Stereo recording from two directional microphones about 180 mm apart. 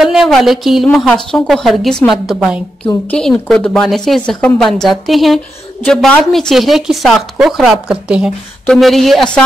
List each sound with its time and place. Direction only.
0.0 s a woman's voice: centre (ahead or behind)